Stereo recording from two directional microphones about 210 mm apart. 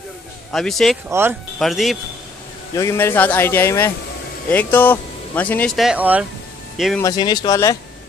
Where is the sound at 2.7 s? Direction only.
15° left (ahead or behind); by 6.2 s 5° right (ahead or behind).